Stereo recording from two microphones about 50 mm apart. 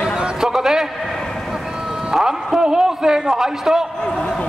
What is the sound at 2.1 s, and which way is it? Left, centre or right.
A man's voice, centre.